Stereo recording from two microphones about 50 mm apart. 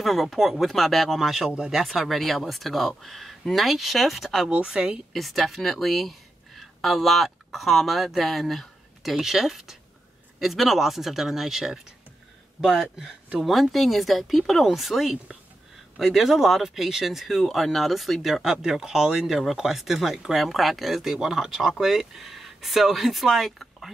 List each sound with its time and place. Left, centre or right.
0.0 s speech: centre
4.5 s speech: centre
5.1 s speech: centre